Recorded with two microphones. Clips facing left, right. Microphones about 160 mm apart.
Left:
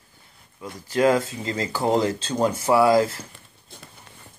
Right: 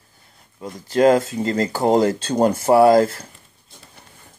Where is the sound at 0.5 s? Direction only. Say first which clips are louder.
Right 5 dB; 35° right (ahead or behind).